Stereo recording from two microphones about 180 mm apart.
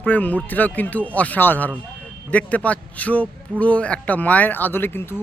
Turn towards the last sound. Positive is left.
turn(degrees=10)  # may be behind; listen again after turning